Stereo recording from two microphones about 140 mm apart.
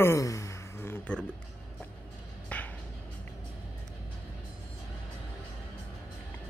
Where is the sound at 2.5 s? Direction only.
10° left (ahead or behind).